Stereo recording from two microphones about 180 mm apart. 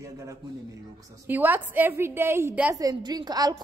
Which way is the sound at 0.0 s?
15° right (ahead or behind).